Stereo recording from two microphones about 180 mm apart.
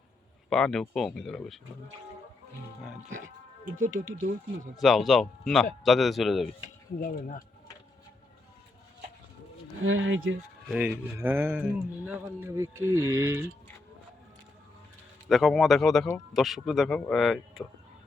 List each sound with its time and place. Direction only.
0.5 s a man's voice: 5° left (ahead or behind)
3.8 s speech: 90° right
4.1 s speech: 45° right (ahead or behind)
4.8 s a man's voice: centre (ahead or behind)
7.0 s speech: 50° left (ahead or behind)
9.8 s speech: 90° right
10.7 s speech: 5° right (ahead or behind)
15.3 s a man's voice: centre (ahead or behind)